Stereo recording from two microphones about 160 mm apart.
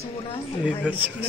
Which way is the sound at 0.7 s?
10° right (ahead or behind).